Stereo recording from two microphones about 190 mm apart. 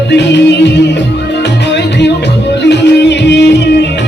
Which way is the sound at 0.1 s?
65° left (ahead or behind).